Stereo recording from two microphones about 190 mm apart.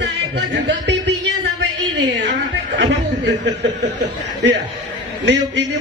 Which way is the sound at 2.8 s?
65° right (ahead or behind).